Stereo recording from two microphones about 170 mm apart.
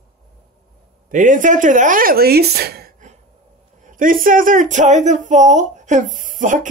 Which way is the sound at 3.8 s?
50° right (ahead or behind).